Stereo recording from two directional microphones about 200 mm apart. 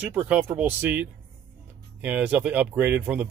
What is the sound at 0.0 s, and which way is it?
Speech, 10° right (ahead or behind).